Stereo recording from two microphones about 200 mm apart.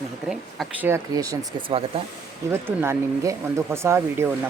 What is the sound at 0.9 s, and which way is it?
Speech, 15° right (ahead or behind).